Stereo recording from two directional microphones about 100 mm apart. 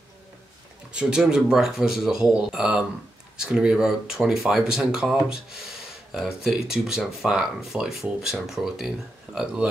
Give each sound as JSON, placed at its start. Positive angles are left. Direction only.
{"t": 0.9, "sound": "speech", "side_deg": -5}
{"t": 6.1, "sound": "speech", "side_deg": -5}